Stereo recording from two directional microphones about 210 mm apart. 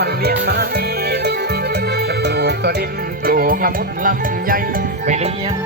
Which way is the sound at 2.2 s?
50° right (ahead or behind).